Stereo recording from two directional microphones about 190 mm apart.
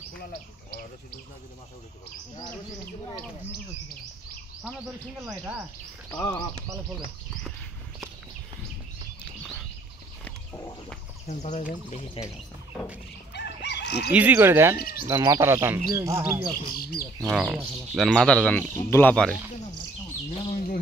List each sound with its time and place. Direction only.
0.7 s speech: 55° left (ahead or behind)
5.2 s speech: 5° right (ahead or behind)
6.1 s speech: 20° left (ahead or behind)
10.2 s a sound: 10° left (ahead or behind)
11.2 s speech: 35° left (ahead or behind)
13.3 s chicken: 65° left (ahead or behind)
14.1 s speech: 10° right (ahead or behind)
16.5 s speech: 50° left (ahead or behind)
17.3 s speech: centre (ahead or behind)